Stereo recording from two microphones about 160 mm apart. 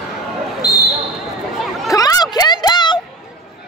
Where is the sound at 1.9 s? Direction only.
25° left (ahead or behind).